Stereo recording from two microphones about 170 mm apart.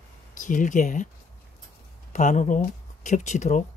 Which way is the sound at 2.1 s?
45° left (ahead or behind).